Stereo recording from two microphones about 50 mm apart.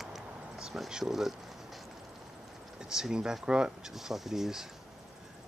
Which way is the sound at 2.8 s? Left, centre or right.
Centre.